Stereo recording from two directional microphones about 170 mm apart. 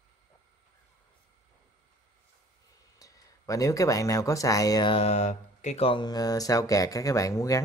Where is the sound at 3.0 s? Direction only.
20° left (ahead or behind).